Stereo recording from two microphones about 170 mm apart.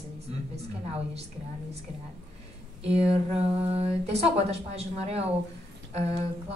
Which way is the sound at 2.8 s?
35° right (ahead or behind).